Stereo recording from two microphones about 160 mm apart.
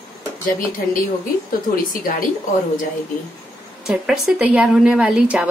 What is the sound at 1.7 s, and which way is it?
Speech, 60° left (ahead or behind).